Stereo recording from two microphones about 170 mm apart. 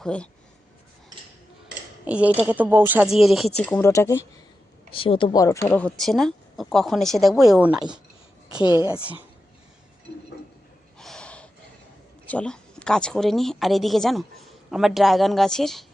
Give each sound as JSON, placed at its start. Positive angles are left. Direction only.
{"t": 0.0, "sound": "speech", "side_deg": 5}
{"t": 2.0, "sound": "speech", "side_deg": -10}
{"t": 3.6, "sound": "speech", "side_deg": 10}
{"t": 4.9, "sound": "a woman's voice", "side_deg": 30}
{"t": 8.6, "sound": "speech", "side_deg": 25}
{"t": 10.9, "sound": "snort", "side_deg": 5}
{"t": 12.3, "sound": "a woman's voice", "side_deg": 5}